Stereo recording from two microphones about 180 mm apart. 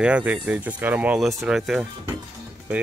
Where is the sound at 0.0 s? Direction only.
5° right (ahead or behind).